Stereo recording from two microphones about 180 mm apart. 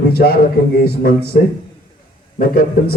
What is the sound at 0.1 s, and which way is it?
A man's voice, 60° left (ahead or behind).